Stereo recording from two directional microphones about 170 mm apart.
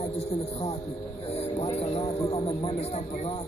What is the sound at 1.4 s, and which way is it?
Speech, 40° left (ahead or behind).